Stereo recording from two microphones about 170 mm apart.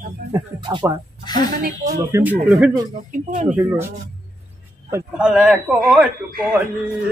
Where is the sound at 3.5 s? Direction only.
15° right (ahead or behind).